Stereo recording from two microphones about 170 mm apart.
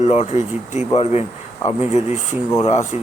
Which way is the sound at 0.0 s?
40° left (ahead or behind).